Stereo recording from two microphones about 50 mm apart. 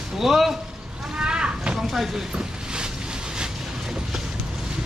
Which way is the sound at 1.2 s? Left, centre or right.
Centre.